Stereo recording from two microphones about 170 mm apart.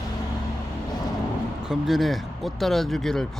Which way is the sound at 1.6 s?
Centre (ahead or behind).